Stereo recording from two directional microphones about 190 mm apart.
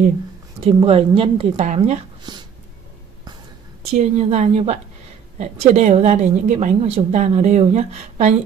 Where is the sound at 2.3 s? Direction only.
20° right (ahead or behind).